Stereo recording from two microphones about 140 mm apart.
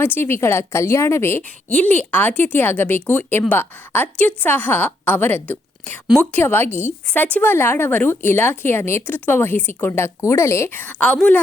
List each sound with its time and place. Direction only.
0.0 s a woman's voice: 15° left (ahead or behind)